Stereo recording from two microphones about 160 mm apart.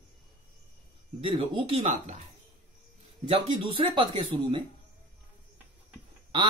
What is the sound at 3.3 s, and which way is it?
Speech, 30° right (ahead or behind).